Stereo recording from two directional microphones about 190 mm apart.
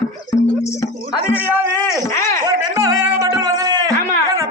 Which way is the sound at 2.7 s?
20° right (ahead or behind).